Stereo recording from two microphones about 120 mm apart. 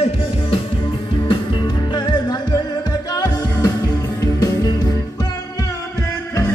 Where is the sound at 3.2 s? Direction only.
35° left (ahead or behind).